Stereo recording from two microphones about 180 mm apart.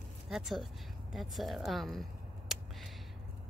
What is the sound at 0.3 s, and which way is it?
A woman's voice, centre (ahead or behind).